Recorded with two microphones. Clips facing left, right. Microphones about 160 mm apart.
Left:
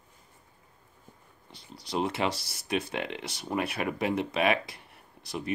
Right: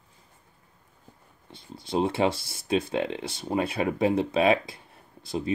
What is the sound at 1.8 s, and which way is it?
Speech, 25° right (ahead or behind).